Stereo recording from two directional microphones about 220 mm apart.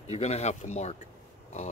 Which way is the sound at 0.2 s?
30° left (ahead or behind).